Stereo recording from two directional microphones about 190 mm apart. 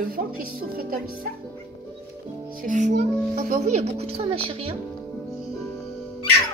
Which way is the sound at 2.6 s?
45° right (ahead or behind).